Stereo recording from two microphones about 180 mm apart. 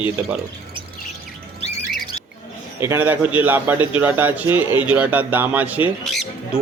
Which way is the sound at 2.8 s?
15° right (ahead or behind).